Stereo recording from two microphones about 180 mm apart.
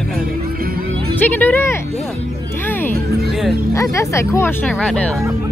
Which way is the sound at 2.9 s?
60° right (ahead or behind).